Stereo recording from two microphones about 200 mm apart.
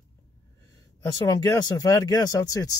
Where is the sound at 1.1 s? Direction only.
20° left (ahead or behind).